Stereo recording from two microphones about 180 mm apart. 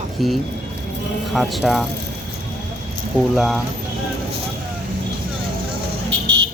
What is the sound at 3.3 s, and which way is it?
Speech, centre (ahead or behind).